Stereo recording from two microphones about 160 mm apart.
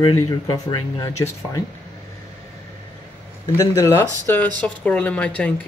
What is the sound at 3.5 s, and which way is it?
Speech, 20° left (ahead or behind).